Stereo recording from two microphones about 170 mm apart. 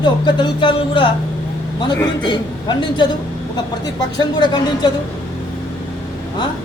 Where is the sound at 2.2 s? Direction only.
25° left (ahead or behind).